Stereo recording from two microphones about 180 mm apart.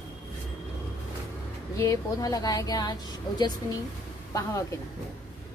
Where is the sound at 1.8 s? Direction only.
20° left (ahead or behind).